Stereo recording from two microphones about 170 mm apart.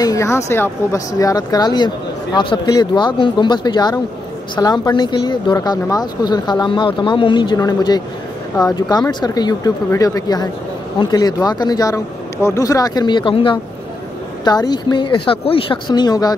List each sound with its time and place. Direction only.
0.0 s speech: 20° left (ahead or behind)